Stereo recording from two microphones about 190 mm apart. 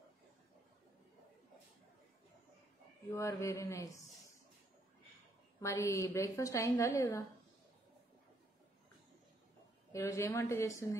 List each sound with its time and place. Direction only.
3.1 s a woman's voice: 15° left (ahead or behind)
5.6 s a woman's voice: 15° left (ahead or behind)
9.9 s a woman's voice: 15° left (ahead or behind)